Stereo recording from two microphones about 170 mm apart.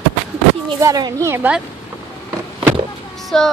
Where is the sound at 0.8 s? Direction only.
20° right (ahead or behind).